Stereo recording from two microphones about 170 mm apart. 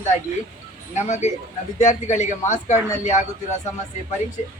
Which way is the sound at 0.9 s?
45° left (ahead or behind).